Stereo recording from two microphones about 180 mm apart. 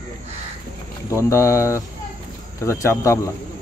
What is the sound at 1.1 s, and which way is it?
Speech, 15° left (ahead or behind).